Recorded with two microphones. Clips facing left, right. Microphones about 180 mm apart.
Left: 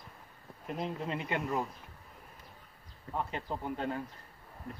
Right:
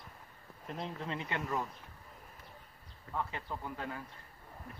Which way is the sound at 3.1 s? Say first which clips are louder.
Left 3 dB; 20° left (ahead or behind).